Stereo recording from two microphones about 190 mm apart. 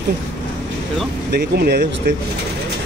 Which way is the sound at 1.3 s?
55° right (ahead or behind).